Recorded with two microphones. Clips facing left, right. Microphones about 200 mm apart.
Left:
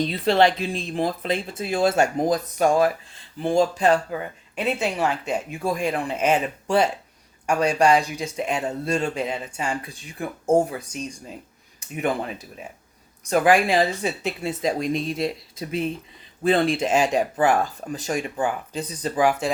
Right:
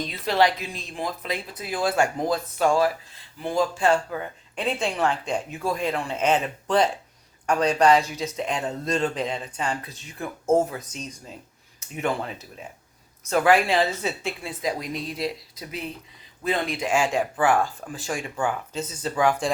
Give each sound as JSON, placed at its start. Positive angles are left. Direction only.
{"t": 0.1, "sound": "speech", "side_deg": 30}